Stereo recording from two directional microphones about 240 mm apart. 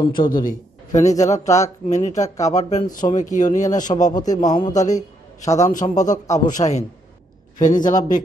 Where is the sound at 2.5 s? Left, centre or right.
Left.